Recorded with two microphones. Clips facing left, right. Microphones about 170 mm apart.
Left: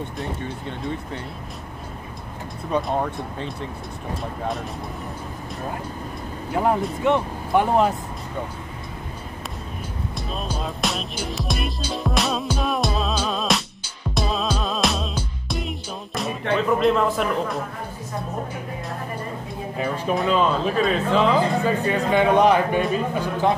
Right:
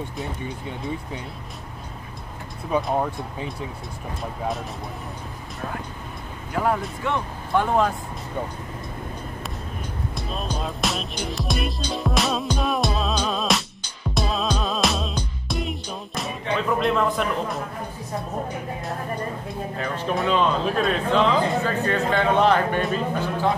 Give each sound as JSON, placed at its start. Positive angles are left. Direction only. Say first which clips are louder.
{"t": 0.4, "sound": "speech", "louder": "left 1 dB", "side_deg": -10}
{"t": 2.7, "sound": "speech", "louder": "even", "side_deg": -5}
{"t": 6.5, "sound": "speech", "louder": "left 2 dB", "side_deg": 25}
{"t": 10.1, "sound": "music", "louder": "even", "side_deg": 0}
{"t": 16.8, "sound": "speech", "louder": "left 2 dB", "side_deg": 0}
{"t": 19.8, "sound": "speech", "louder": "left 3 dB", "side_deg": 5}